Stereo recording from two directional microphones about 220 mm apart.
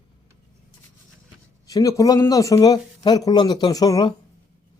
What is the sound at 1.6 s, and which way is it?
Speech, 15° left (ahead or behind).